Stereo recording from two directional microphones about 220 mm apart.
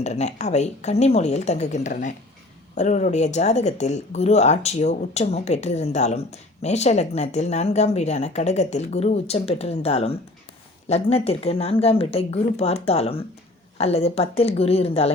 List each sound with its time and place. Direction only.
0.0 s speech: 30° left (ahead or behind)